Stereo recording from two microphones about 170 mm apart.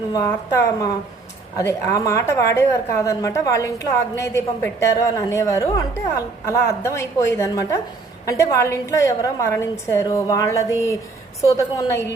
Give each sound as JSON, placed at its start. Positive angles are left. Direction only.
{"t": 0.1, "sound": "a woman's voice", "side_deg": 20}